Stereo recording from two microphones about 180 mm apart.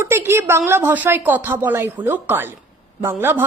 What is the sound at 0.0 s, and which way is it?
A woman's voice, 15° right (ahead or behind).